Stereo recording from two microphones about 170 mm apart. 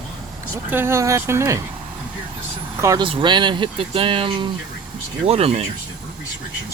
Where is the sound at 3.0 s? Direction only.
30° right (ahead or behind).